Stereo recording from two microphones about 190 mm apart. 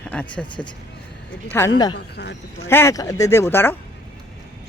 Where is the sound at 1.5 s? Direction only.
15° left (ahead or behind).